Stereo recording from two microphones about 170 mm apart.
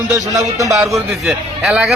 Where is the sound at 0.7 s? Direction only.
Centre (ahead or behind).